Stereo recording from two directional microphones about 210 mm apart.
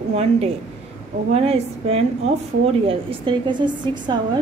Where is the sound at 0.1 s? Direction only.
30° right (ahead or behind).